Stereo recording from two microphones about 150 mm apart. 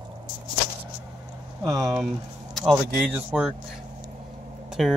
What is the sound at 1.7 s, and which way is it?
Speech, 25° right (ahead or behind).